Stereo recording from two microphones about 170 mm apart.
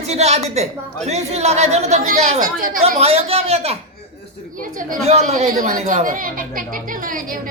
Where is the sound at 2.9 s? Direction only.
35° right (ahead or behind).